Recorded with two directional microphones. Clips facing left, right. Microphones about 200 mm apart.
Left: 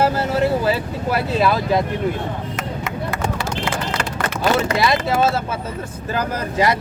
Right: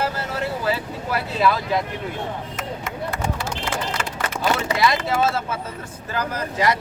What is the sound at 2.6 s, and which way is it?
Run, 80° left.